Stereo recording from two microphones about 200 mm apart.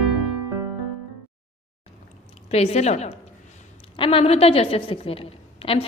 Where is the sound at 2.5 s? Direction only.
30° left (ahead or behind).